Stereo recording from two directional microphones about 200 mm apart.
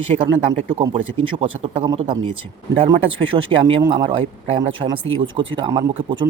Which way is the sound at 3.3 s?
30° right (ahead or behind).